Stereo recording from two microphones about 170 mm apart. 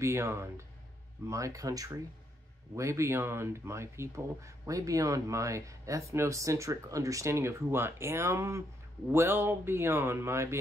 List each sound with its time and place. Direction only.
0.0 s speech: 15° right (ahead or behind)